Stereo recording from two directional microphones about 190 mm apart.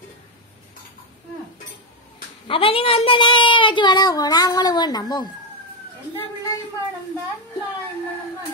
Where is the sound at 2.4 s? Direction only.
30° left (ahead or behind).